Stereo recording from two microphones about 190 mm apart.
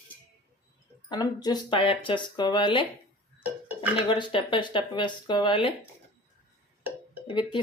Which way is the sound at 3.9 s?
25° left (ahead or behind).